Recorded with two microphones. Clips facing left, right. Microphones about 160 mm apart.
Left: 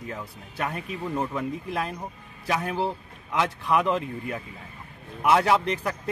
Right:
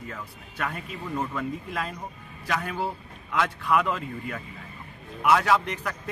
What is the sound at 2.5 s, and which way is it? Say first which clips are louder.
A man's voice: left 3 dB; 20° left (ahead or behind).